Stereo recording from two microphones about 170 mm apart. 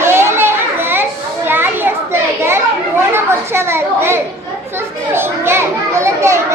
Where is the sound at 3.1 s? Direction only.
15° right (ahead or behind).